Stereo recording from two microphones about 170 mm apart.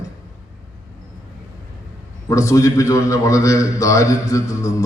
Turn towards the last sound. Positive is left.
turn(degrees=20)  # may be behind; listen again after turning